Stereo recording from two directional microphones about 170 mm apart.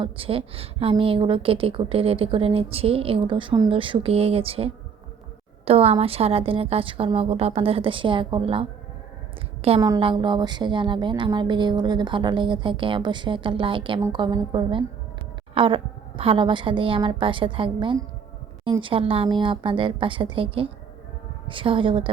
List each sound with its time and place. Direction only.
0.0 s a woman's voice: 35° right (ahead or behind)